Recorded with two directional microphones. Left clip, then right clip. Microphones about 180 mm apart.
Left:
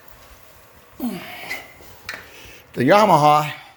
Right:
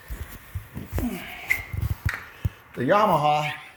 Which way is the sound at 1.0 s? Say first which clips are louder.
Left 6 dB; 30° left (ahead or behind).